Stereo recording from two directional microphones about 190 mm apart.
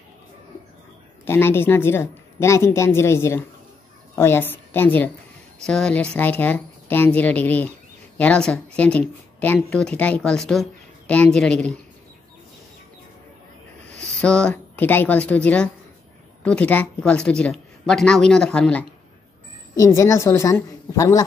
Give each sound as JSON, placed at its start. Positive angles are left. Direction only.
{"t": 1.2, "sound": "a woman's voice", "side_deg": 10}
{"t": 13.9, "sound": "a woman's voice", "side_deg": 5}